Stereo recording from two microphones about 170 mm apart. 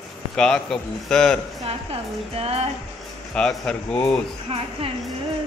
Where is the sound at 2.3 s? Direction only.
35° right (ahead or behind).